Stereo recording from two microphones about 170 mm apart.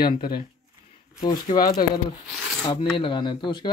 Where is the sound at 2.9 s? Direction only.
30° left (ahead or behind).